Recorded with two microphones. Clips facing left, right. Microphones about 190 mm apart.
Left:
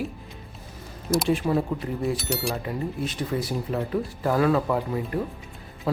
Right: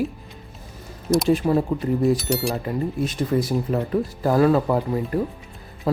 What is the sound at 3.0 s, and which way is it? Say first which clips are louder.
Speech: right 8 dB; 45° right (ahead or behind).